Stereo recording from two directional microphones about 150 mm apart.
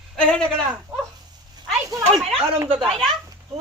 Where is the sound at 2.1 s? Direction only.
Centre (ahead or behind).